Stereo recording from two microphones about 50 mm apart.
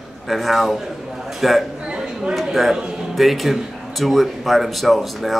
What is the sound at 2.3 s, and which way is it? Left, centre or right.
A man's voice, centre.